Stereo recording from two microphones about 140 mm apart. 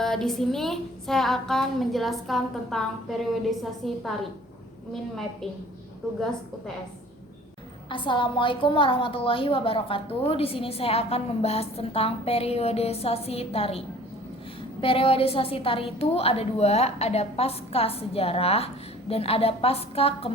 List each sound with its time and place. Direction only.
0.0 s speech: 5° left (ahead or behind)
7.9 s a woman's voice: 35° left (ahead or behind)